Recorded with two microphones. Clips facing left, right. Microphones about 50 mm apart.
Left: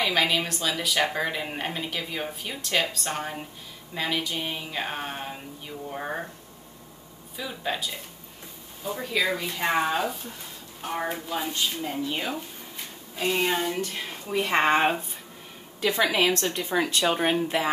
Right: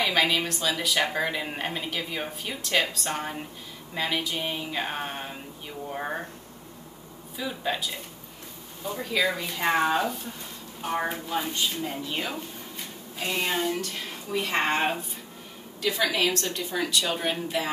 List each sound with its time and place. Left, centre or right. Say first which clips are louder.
0.0 s speech: even; centre
7.3 s speech: right 1 dB; centre
13.7 s speech: left 2 dB; left
15.9 s speech: left 2 dB; left